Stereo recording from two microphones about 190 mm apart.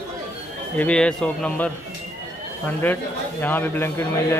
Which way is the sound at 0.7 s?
5° left (ahead or behind).